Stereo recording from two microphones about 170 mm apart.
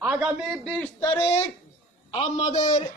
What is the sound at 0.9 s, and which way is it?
A man's voice, 30° left (ahead or behind).